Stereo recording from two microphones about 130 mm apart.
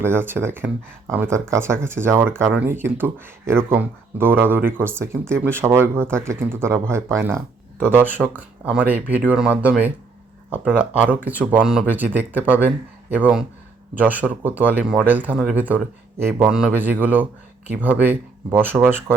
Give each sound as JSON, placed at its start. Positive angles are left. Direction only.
{"t": 0.0, "sound": "speech", "side_deg": -15}